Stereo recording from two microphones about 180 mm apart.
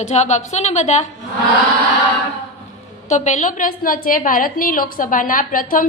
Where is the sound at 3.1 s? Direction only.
40° left (ahead or behind).